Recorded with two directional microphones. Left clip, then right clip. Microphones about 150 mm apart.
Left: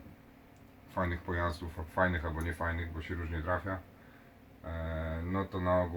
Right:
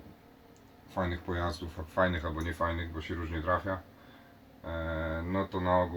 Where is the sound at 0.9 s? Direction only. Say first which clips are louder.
Right 1 dB; centre (ahead or behind).